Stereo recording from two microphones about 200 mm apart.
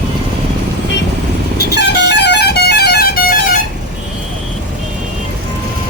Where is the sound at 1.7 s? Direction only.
60° left (ahead or behind).